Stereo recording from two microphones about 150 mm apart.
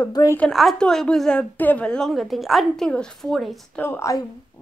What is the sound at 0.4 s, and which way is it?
A woman's voice, centre (ahead or behind).